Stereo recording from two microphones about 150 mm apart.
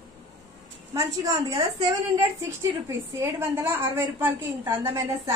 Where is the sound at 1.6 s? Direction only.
30° right (ahead or behind).